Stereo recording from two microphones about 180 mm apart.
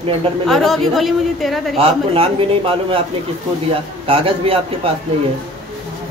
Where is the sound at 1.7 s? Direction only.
30° right (ahead or behind).